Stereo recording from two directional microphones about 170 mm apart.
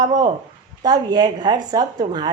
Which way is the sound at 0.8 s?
25° right (ahead or behind).